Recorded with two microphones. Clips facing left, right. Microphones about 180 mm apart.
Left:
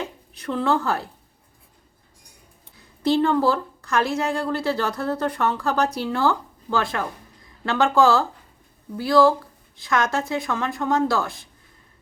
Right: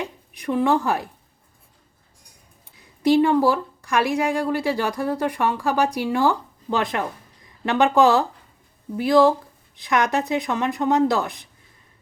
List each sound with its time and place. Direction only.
0.0 s a woman's voice: 15° right (ahead or behind)
3.0 s a woman's voice: 15° right (ahead or behind)